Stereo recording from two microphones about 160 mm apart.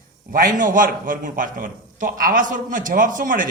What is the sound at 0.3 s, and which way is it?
A man's voice, 65° right (ahead or behind).